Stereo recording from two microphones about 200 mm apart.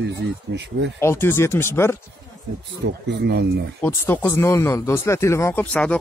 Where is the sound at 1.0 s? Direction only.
10° left (ahead or behind).